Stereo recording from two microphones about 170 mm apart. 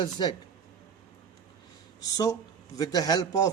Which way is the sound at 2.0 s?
20° left (ahead or behind).